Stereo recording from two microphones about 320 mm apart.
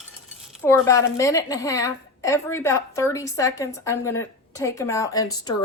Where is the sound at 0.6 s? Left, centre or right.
Centre.